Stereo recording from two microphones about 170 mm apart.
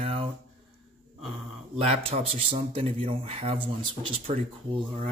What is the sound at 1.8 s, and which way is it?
A man's voice, 35° right (ahead or behind).